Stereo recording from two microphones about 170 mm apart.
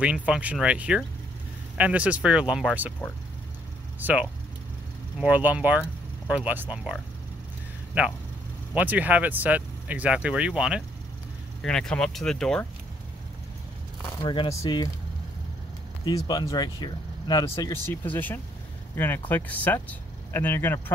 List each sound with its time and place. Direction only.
0.0 s speech: 5° right (ahead or behind)
4.0 s speech: 10° right (ahead or behind)
8.7 s speech: 10° right (ahead or behind)
14.2 s speech: 30° left (ahead or behind)
16.1 s speech: 25° left (ahead or behind)
18.0 s speech: 10° left (ahead or behind)